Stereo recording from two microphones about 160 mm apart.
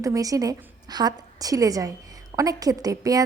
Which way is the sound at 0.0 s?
20° right (ahead or behind).